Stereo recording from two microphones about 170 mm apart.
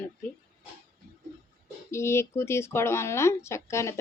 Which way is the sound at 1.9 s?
15° left (ahead or behind).